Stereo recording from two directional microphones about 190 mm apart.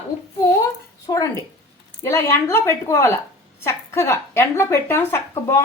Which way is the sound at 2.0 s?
15° left (ahead or behind).